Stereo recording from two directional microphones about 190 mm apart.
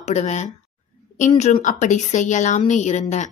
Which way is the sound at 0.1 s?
35° left (ahead or behind).